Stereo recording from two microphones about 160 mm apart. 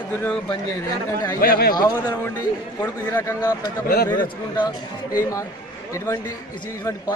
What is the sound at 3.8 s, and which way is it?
Speech, 65° left (ahead or behind).